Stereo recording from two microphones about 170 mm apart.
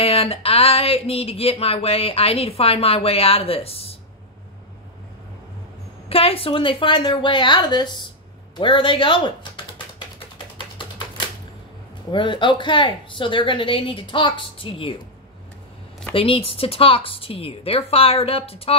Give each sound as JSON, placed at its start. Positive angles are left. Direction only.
{"t": 0.0, "sound": "speech", "side_deg": 35}
{"t": 6.0, "sound": "a woman's voice", "side_deg": 35}
{"t": 10.8, "sound": "typewriter", "side_deg": 30}
{"t": 12.1, "sound": "a woman's voice", "side_deg": 30}
{"t": 16.1, "sound": "speech", "side_deg": 30}